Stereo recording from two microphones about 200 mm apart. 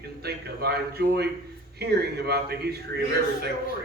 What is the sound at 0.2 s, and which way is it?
A man's voice, 55° right (ahead or behind).